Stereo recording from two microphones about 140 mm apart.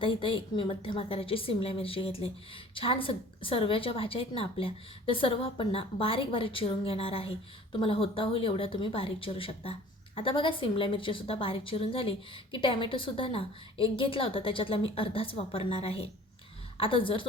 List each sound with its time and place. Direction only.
0.0 s a woman's voice: 40° left (ahead or behind)